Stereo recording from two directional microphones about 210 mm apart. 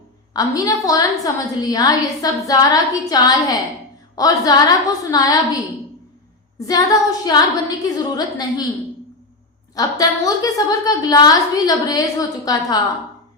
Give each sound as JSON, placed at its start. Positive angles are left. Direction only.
{"t": 0.3, "sound": "a woman's voice", "side_deg": 15}
{"t": 6.7, "sound": "a woman's voice", "side_deg": 15}
{"t": 9.7, "sound": "a woman's voice", "side_deg": 15}